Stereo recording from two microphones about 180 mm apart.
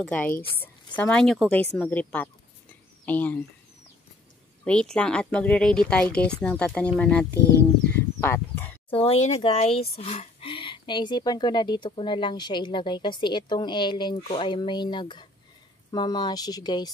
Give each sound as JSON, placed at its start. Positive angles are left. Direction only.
{"t": 0.0, "sound": "speech", "side_deg": 5}
{"t": 4.6, "sound": "speech", "side_deg": 5}
{"t": 7.9, "sound": "a sound", "side_deg": 10}
{"t": 9.0, "sound": "speech", "side_deg": 35}